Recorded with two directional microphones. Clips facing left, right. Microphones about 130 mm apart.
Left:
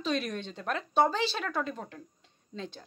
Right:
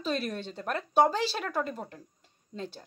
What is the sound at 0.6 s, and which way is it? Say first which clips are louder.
Speech: right 2 dB; 10° right (ahead or behind).